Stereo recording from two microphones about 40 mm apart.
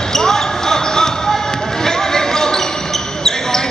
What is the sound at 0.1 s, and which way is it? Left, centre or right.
Basketball bounce, centre.